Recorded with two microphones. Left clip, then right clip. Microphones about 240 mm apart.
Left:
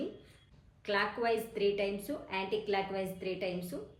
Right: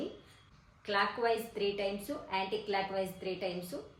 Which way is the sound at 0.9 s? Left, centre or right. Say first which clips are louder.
Right 1 dB; centre.